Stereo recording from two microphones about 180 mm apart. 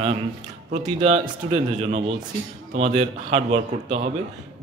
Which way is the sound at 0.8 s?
30° right (ahead or behind).